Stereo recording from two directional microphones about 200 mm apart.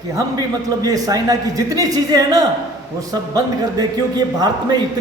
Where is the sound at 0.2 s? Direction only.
15° right (ahead or behind).